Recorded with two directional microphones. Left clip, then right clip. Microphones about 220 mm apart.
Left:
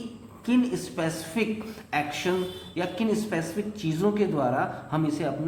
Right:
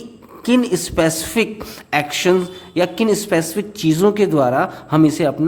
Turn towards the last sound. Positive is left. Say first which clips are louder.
# right 13 dB
turn(degrees=-50)  # may be behind; listen again after turning